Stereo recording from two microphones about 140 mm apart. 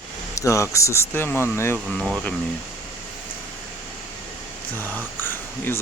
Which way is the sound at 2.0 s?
Centre (ahead or behind).